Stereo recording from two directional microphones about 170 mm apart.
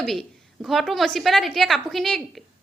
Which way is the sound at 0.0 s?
Centre (ahead or behind).